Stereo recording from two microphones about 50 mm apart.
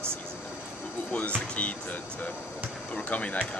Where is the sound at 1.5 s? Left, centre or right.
Left.